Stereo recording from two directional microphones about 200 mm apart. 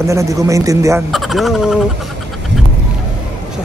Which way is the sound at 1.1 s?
Centre (ahead or behind).